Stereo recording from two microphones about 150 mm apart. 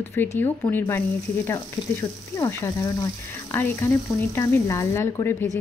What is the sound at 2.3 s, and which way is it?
A woman's voice, 20° left (ahead or behind).